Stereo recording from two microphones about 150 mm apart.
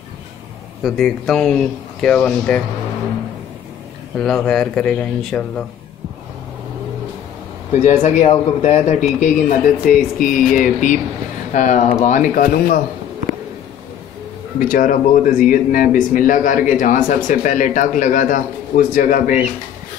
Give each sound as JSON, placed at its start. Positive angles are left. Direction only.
{"t": 0.8, "sound": "speech", "side_deg": 0}
{"t": 4.2, "sound": "speech", "side_deg": 5}
{"t": 7.7, "sound": "speech", "side_deg": 55}
{"t": 14.6, "sound": "speech", "side_deg": 65}